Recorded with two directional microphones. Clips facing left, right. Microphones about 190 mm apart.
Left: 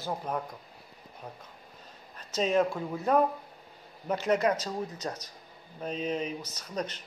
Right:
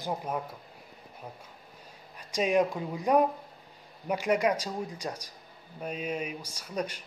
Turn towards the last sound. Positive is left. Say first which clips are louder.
# right 1 dB
turn(degrees=-10)  # may be behind; listen again after turning